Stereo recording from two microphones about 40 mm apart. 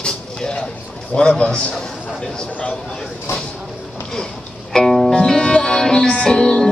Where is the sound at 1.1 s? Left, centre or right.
Left.